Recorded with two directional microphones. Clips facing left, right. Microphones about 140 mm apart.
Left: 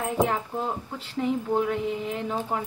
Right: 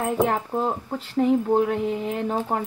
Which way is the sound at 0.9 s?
45° right (ahead or behind).